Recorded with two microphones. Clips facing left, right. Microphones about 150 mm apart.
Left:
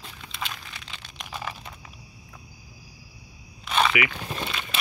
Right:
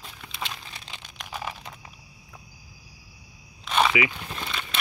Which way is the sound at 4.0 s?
20° right (ahead or behind).